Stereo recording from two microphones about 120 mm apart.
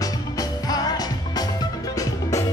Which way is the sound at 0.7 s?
35° left (ahead or behind).